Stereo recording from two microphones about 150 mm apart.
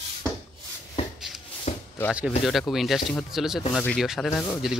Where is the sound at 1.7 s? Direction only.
50° left (ahead or behind).